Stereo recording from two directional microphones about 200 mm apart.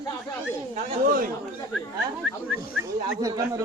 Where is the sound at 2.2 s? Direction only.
5° right (ahead or behind).